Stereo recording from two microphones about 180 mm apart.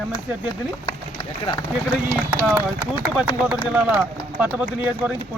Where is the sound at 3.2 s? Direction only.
5° right (ahead or behind).